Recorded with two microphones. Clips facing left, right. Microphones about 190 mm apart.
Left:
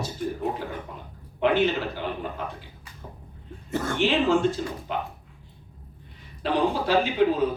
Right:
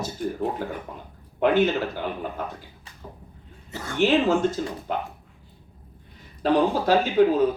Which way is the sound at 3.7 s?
50° left (ahead or behind).